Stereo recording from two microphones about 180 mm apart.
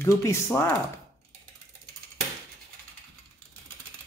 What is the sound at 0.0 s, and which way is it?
Speech, 15° left (ahead or behind).